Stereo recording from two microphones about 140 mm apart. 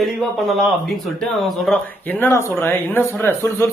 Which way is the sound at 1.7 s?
15° left (ahead or behind).